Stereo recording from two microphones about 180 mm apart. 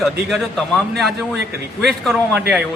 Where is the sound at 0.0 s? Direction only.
Centre (ahead or behind).